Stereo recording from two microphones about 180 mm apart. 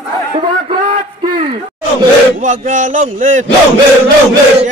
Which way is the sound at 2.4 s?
45° right (ahead or behind).